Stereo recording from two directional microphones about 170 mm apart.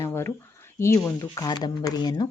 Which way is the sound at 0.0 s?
15° left (ahead or behind).